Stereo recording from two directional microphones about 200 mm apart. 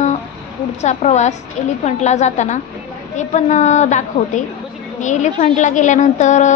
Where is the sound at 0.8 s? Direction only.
35° left (ahead or behind).